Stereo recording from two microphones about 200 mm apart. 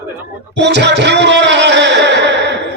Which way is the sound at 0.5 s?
60° right (ahead or behind).